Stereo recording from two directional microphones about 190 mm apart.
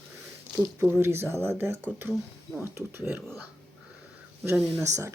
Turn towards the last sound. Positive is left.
turn(degrees=-15)  # may be behind; listen again after turning